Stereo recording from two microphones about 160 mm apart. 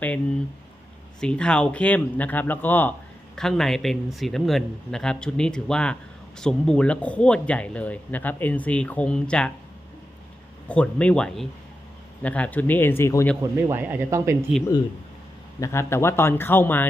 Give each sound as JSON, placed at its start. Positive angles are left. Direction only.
{"t": 1.2, "sound": "speech", "side_deg": 5}
{"t": 10.7, "sound": "speech", "side_deg": 5}
{"t": 13.4, "sound": "speech", "side_deg": -15}
{"t": 15.6, "sound": "speech", "side_deg": 15}